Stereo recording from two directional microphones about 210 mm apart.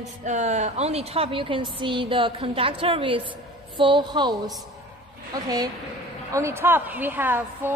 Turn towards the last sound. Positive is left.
turn(degrees=-10)  # may be behind; listen again after turning